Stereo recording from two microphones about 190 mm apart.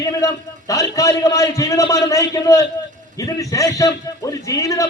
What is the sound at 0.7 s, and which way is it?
A man's voice, 20° left (ahead or behind).